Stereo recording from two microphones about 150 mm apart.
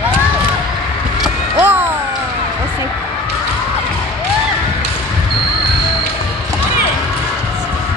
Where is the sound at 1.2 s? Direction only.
10° right (ahead or behind).